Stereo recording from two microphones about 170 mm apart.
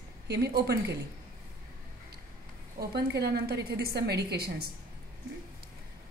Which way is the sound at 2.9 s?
70° right (ahead or behind).